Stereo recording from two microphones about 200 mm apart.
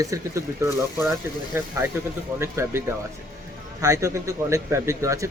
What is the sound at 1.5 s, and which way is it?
Speech, 10° right (ahead or behind).